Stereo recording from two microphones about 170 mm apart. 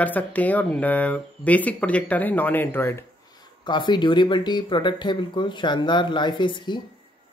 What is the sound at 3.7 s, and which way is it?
Speech, 25° left (ahead or behind).